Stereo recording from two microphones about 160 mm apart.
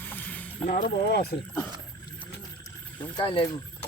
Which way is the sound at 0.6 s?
65° left (ahead or behind).